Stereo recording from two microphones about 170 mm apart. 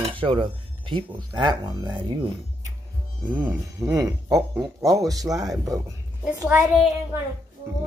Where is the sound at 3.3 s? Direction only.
10° right (ahead or behind).